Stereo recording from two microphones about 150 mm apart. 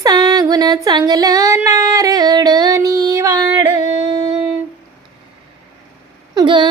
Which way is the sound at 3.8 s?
50° left (ahead or behind).